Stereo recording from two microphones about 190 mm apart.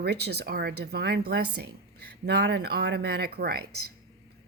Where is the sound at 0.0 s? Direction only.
60° right (ahead or behind).